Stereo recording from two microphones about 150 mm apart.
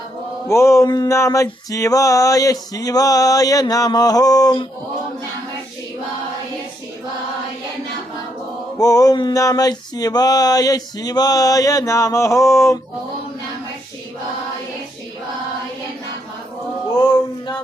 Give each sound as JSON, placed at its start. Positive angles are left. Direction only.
{"t": 0.4, "sound": "music", "side_deg": 20}
{"t": 8.8, "sound": "music", "side_deg": 25}